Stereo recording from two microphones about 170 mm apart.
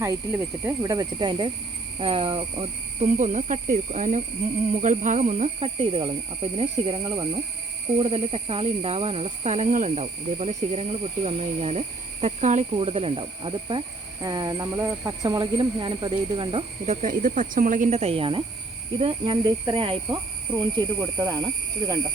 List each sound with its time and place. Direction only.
0.0 s speech: 15° right (ahead or behind); by 3.1 s 30° right (ahead or behind)
3.1 s speech: 45° right (ahead or behind)
12.7 s speech: 35° right (ahead or behind)